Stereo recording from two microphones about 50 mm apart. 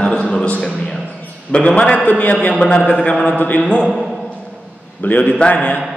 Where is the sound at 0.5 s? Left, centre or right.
Left.